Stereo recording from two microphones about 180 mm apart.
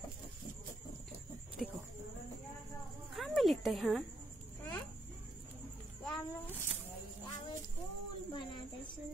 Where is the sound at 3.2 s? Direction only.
Centre (ahead or behind).